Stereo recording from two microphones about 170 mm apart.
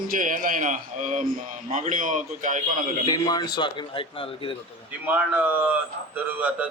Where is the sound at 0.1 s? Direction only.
50° right (ahead or behind).